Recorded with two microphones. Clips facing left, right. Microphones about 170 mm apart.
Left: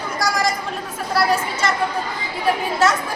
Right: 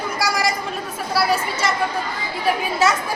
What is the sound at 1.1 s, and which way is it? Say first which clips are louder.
Speech: left 1 dB; 5° right (ahead or behind).